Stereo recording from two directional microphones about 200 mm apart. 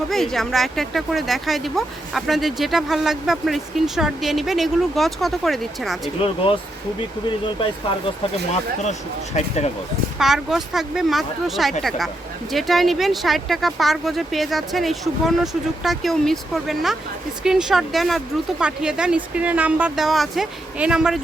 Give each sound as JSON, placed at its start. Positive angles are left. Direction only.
{"t": 0.1, "sound": "speech", "side_deg": 0}
{"t": 6.2, "sound": "speech", "side_deg": 25}
{"t": 10.2, "sound": "speech", "side_deg": 0}